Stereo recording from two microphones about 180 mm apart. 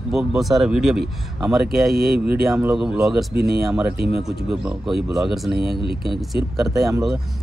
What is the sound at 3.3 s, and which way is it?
Speech, 65° right (ahead or behind).